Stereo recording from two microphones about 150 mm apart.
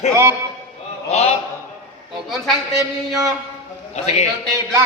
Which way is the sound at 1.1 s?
45° left (ahead or behind).